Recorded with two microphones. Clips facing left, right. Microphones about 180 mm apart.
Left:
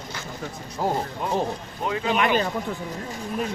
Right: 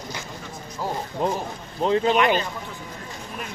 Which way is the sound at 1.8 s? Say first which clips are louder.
Right 4 dB; 35° right (ahead or behind).